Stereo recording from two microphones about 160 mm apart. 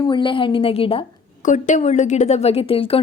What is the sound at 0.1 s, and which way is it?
Speech, 30° left (ahead or behind).